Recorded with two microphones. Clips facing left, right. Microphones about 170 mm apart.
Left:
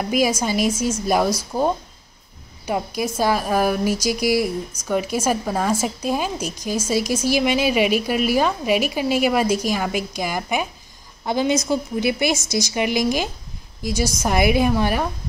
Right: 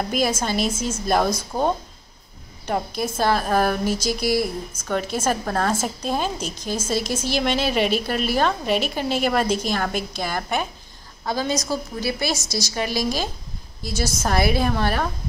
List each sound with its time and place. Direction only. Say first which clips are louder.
0.1 s a woman's voice: left 5 dB; 10° left (ahead or behind)